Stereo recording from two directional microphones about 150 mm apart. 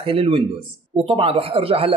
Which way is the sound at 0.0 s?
35° right (ahead or behind).